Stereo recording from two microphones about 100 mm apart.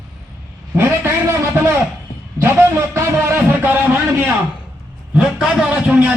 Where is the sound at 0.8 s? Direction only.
25° right (ahead or behind).